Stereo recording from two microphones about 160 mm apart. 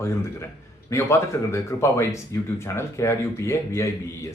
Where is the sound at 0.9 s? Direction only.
15° left (ahead or behind).